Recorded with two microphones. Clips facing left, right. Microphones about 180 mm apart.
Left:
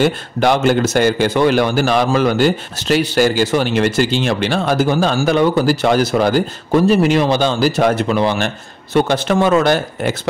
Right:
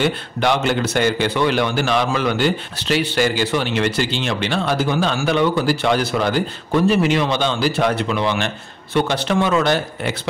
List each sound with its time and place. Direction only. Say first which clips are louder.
0.0 s speech: left 4 dB; 45° left (ahead or behind)